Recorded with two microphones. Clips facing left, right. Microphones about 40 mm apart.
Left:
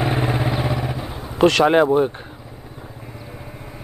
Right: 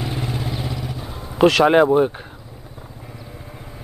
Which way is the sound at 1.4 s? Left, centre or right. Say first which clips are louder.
Right 1 dB; centre.